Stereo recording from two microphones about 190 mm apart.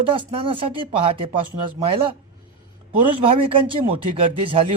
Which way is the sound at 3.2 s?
30° right (ahead or behind).